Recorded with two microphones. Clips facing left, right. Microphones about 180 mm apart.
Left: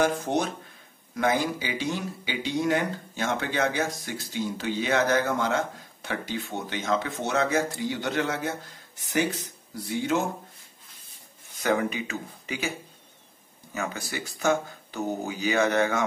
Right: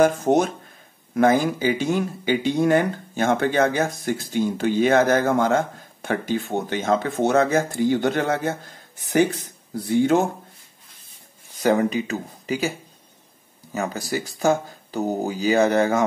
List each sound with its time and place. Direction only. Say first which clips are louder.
0.0 s speech: right 7 dB; 45° right (ahead or behind)
11.6 s speech: right 6 dB; 35° right (ahead or behind)
13.7 s speech: right 6 dB; 35° right (ahead or behind)